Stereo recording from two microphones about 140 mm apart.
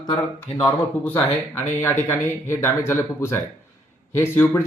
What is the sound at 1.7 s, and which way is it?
Speech, 15° left (ahead or behind).